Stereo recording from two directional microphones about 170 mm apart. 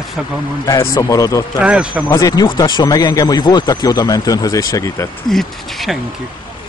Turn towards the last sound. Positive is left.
turn(degrees=0)  # may be behind; listen again after turning